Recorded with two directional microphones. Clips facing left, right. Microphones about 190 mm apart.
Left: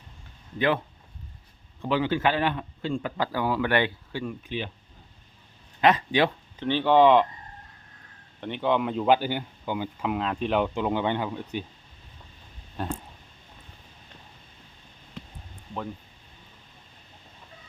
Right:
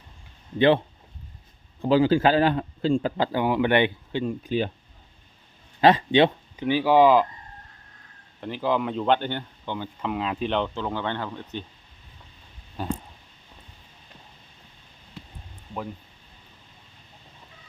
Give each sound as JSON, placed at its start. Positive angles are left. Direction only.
{"t": 1.8, "sound": "a man's voice", "side_deg": -35}
{"t": 4.4, "sound": "speech", "side_deg": -40}
{"t": 5.8, "sound": "a man's voice", "side_deg": -25}
{"t": 6.6, "sound": "speech", "side_deg": -10}
{"t": 8.4, "sound": "speech", "side_deg": 0}
{"t": 12.8, "sound": "a sound", "side_deg": 0}